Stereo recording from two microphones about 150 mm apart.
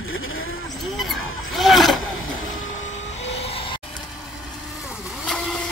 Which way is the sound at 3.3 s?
40° left (ahead or behind).